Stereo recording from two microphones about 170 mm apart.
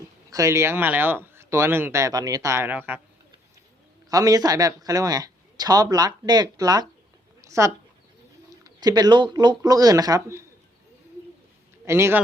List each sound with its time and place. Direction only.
0.3 s speech: 20° right (ahead or behind)
4.1 s speech: 20° right (ahead or behind)
7.4 s a sound: 20° right (ahead or behind)
8.4 s speech: 20° right (ahead or behind)
11.9 s speech: 15° right (ahead or behind)